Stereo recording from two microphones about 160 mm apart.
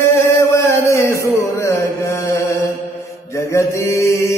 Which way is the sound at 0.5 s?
20° left (ahead or behind).